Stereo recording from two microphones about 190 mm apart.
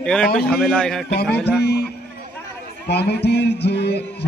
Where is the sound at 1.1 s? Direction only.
55° left (ahead or behind).